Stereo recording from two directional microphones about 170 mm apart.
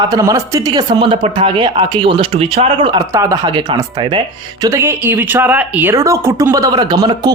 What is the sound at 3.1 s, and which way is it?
A woman's voice, 20° right (ahead or behind).